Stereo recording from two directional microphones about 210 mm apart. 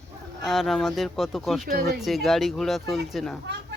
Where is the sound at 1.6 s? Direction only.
45° right (ahead or behind).